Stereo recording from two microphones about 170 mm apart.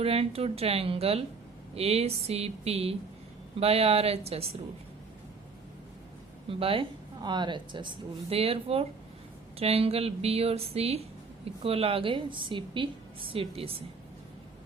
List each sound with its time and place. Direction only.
0.0 s a woman's voice: 35° right (ahead or behind)
6.5 s a woman's voice: 35° right (ahead or behind)